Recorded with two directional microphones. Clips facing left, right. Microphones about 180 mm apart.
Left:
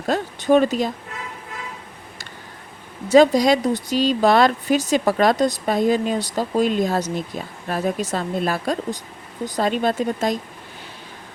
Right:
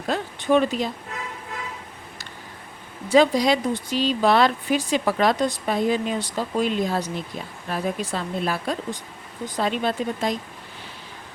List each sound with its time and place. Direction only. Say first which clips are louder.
0.1 s speech: left 4 dB; 40° left (ahead or behind)
3.1 s speech: left 4 dB; 45° left (ahead or behind)